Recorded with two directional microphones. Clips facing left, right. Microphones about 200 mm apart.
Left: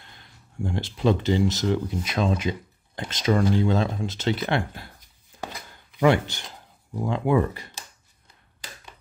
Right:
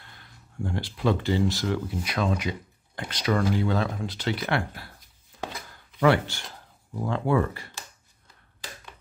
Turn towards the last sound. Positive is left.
turn(degrees=20)  # may be behind; listen again after turning